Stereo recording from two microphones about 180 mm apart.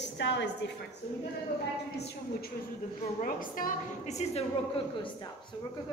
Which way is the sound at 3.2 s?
50° left (ahead or behind).